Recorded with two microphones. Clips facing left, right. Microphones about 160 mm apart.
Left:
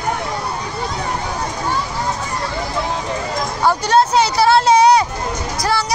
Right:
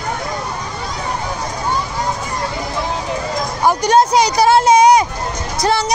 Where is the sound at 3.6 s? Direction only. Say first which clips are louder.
Right 2 dB; 15° right (ahead or behind).